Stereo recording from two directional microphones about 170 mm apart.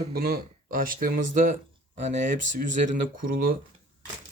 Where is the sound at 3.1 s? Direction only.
55° right (ahead or behind).